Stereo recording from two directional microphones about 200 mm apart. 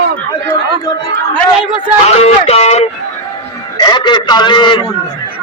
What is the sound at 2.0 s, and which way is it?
Speech, 30° left (ahead or behind).